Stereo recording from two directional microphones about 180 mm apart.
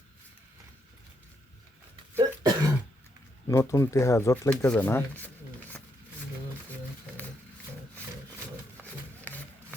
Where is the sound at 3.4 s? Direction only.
15° left (ahead or behind).